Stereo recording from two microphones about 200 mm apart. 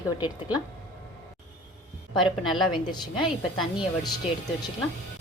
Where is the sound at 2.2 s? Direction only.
Centre (ahead or behind).